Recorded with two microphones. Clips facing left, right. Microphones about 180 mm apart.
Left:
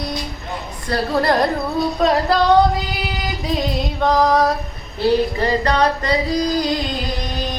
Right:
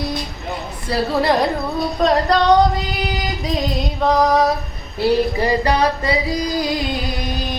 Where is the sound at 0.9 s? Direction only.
Centre (ahead or behind).